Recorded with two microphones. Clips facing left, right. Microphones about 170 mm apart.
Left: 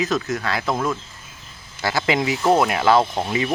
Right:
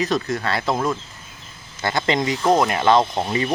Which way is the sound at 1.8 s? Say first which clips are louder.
Even; 5° left (ahead or behind).